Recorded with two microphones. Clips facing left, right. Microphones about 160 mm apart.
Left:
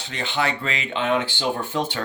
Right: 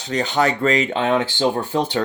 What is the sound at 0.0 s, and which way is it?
Speech, 40° right (ahead or behind).